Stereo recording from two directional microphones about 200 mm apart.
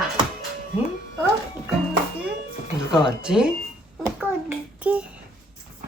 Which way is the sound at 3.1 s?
5° right (ahead or behind).